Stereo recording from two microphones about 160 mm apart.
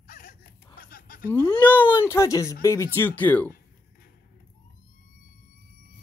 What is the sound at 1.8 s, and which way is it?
Speech, 15° left (ahead or behind).